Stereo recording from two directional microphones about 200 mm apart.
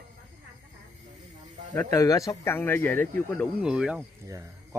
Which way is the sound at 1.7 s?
15° left (ahead or behind).